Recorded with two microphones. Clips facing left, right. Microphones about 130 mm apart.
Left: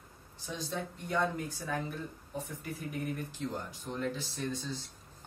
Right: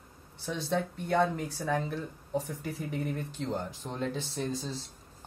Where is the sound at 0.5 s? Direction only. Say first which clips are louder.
Right 7 dB; 65° right (ahead or behind).